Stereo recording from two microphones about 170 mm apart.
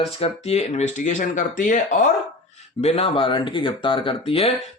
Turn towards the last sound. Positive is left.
turn(degrees=35)  # may be behind; listen again after turning